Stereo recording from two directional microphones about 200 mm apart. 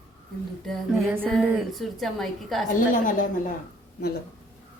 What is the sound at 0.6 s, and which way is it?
Speech, centre (ahead or behind).